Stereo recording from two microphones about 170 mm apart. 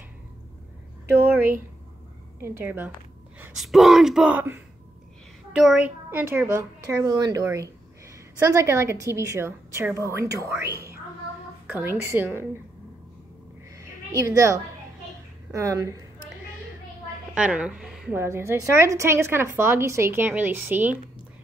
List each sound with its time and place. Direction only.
1.2 s a woman's voice: 10° right (ahead or behind)
3.5 s a woman's voice: centre (ahead or behind)
13.7 s a sound: 15° right (ahead or behind)
15.5 s a woman's voice: 20° right (ahead or behind)
17.3 s a woman's voice: 5° right (ahead or behind)
18.1 s a woman's voice: 15° right (ahead or behind)